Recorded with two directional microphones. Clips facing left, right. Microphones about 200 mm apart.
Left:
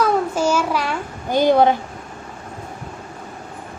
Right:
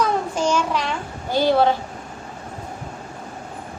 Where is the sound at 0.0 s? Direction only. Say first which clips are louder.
Left 3 dB; 5° left (ahead or behind).